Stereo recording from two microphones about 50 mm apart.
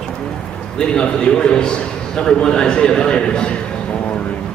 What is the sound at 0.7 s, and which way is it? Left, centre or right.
A man's voice, centre.